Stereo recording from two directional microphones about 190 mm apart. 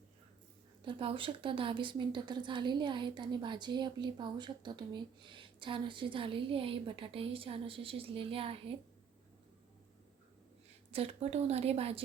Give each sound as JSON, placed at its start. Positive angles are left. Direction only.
{"t": 0.9, "sound": "speech", "side_deg": -25}
{"t": 10.9, "sound": "a woman's voice", "side_deg": -30}